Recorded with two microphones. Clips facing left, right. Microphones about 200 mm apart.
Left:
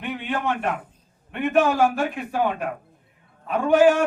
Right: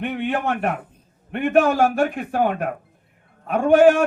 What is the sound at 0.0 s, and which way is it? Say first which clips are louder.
A man's voice: right 4 dB; 55° right (ahead or behind).